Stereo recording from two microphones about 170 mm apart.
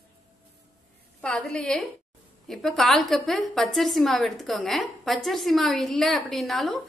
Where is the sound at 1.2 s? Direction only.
5° left (ahead or behind).